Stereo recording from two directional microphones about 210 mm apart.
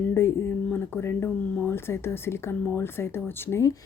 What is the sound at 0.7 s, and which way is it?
Speech, 10° left (ahead or behind).